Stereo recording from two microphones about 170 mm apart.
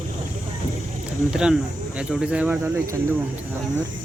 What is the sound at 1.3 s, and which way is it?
Speech, 5° right (ahead or behind).